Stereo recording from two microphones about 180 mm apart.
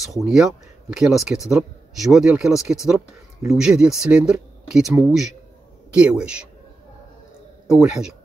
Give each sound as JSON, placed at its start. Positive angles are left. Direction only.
{"t": 0.2, "sound": "speech", "side_deg": 0}
{"t": 5.9, "sound": "speech", "side_deg": -5}
{"t": 7.6, "sound": "speech", "side_deg": -5}